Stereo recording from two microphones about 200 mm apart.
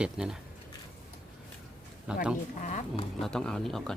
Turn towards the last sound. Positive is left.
turn(degrees=0)  # may be behind; listen again after turning